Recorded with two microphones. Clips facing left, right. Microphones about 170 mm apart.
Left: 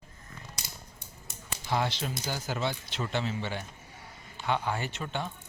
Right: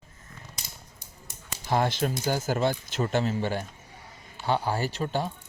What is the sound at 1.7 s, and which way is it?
Speech, 50° right (ahead or behind).